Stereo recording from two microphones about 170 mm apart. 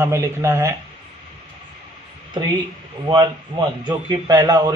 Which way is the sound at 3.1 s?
30° right (ahead or behind).